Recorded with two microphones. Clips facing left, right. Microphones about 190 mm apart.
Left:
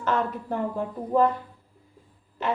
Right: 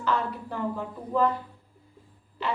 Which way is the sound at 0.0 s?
50° left (ahead or behind).